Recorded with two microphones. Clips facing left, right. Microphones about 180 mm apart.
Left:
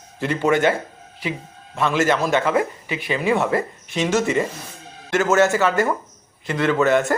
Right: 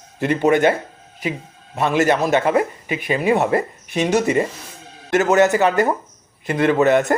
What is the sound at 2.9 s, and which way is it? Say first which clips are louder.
Speech: right 4 dB; 45° right (ahead or behind).